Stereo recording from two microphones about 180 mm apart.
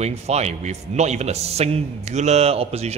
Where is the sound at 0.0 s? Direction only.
35° right (ahead or behind).